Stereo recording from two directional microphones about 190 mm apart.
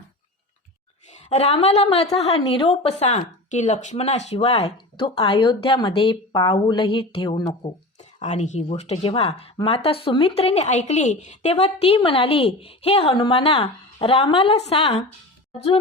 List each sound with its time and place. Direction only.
1.1 s a woman's voice: 35° left (ahead or behind)
7.9 s speech: 35° left (ahead or behind)